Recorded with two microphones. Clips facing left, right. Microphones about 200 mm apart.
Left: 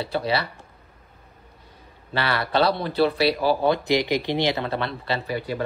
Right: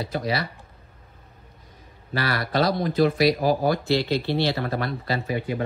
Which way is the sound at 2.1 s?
25° left (ahead or behind).